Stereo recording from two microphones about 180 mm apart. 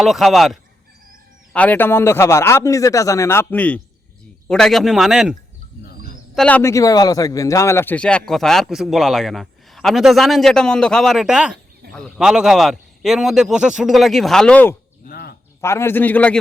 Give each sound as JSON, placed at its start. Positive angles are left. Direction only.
{"t": 0.0, "sound": "a man's voice", "side_deg": 0}
{"t": 5.8, "sound": "a sound", "side_deg": 55}
{"t": 6.3, "sound": "a man's voice", "side_deg": 5}
{"t": 6.6, "sound": "a man's voice", "side_deg": 15}
{"t": 15.0, "sound": "a sound", "side_deg": 60}
{"t": 15.6, "sound": "speech", "side_deg": 15}